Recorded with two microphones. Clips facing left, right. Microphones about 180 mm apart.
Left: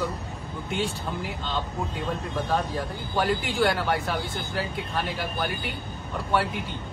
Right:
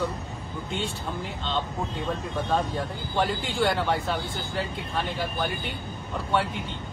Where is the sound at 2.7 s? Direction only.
Centre (ahead or behind).